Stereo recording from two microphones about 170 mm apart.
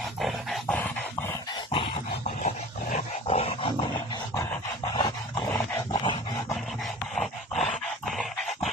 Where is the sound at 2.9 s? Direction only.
35° left (ahead or behind).